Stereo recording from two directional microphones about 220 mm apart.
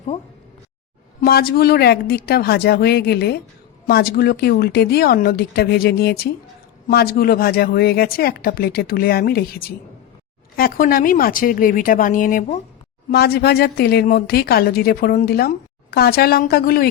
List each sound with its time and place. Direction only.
1.2 s speech: 45° left (ahead or behind)